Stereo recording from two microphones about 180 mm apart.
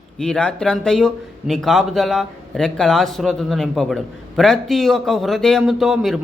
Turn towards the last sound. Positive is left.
turn(degrees=0)  # may be behind; listen again after turning